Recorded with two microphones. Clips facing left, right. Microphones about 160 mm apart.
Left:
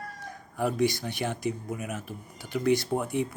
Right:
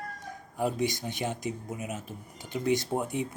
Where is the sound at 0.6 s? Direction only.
20° right (ahead or behind).